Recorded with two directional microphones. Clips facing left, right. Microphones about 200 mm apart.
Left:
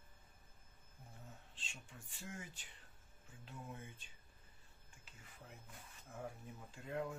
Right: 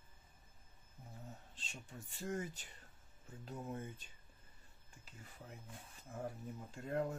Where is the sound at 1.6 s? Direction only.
40° right (ahead or behind).